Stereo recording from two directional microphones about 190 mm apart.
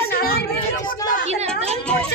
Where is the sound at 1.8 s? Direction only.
5° left (ahead or behind).